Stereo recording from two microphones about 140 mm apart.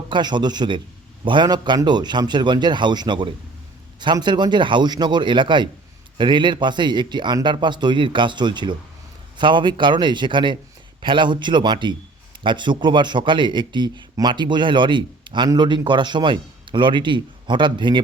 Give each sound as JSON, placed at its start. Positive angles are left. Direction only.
{"t": 0.1, "sound": "speech", "side_deg": -30}